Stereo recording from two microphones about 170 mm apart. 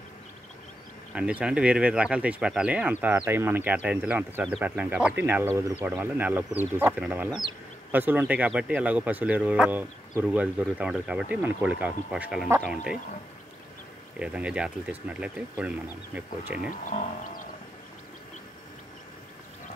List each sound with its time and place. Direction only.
1.1 s speech: 5° right (ahead or behind)
7.2 s speech: 25° right (ahead or behind)
7.9 s speech: 10° right (ahead or behind)
14.1 s speech: 5° right (ahead or behind)
16.7 s speech: 50° left (ahead or behind)